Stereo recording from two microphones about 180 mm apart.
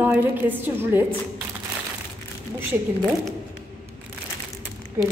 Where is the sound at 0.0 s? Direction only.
10° right (ahead or behind).